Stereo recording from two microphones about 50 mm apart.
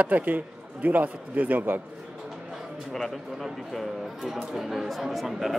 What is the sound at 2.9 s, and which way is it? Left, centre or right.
Speech, centre.